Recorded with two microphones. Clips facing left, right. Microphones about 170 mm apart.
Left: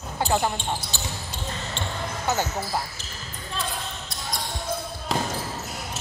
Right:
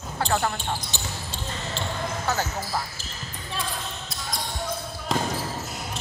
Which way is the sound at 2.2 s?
20° left (ahead or behind).